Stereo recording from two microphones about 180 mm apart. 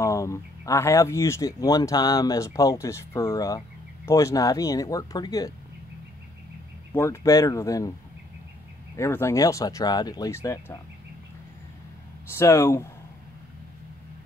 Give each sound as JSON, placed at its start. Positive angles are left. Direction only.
{"t": 0.0, "sound": "speech", "side_deg": 15}
{"t": 6.9, "sound": "speech", "side_deg": 15}
{"t": 8.9, "sound": "speech", "side_deg": 15}
{"t": 12.3, "sound": "speech", "side_deg": 15}